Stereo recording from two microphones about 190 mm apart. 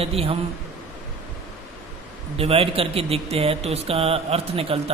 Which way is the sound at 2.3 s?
30° right (ahead or behind).